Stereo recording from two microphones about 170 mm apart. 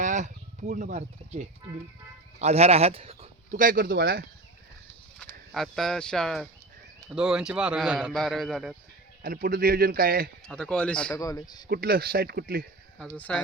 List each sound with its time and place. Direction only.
0.0 s speech: 45° right (ahead or behind)
3.6 s a man's voice: 55° right (ahead or behind)
5.5 s a man's voice: centre (ahead or behind)
9.2 s a man's voice: 60° right (ahead or behind)
10.4 s a man's voice: 5° left (ahead or behind)
11.1 s a man's voice: 20° left (ahead or behind)
11.7 s a man's voice: 65° right (ahead or behind)
13.1 s speech: 10° left (ahead or behind)